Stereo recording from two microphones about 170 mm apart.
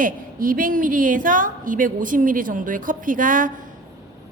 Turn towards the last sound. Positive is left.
turn(degrees=-50)  # may be behind; listen again after turning